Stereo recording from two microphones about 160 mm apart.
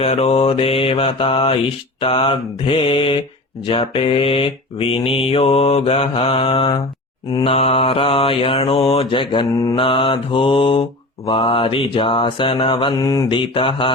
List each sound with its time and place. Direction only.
0.0 s mantra: 40° left (ahead or behind)